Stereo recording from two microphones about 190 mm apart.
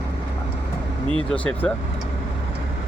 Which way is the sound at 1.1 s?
25° right (ahead or behind).